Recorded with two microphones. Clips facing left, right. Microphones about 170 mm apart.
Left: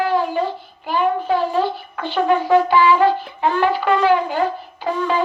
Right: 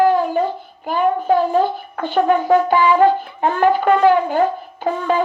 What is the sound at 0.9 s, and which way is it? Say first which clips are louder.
A child's voice: right 2 dB; 45° right (ahead or behind).